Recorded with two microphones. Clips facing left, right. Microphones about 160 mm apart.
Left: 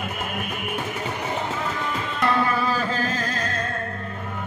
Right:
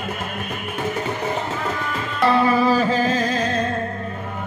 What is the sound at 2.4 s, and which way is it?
Music, 10° right (ahead or behind).